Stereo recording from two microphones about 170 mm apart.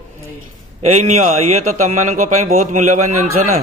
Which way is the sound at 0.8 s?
40° right (ahead or behind).